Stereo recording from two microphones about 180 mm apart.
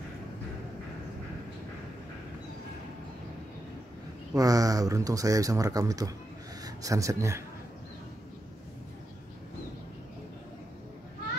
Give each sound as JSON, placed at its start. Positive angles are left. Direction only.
{"t": 4.3, "sound": "speech", "side_deg": -20}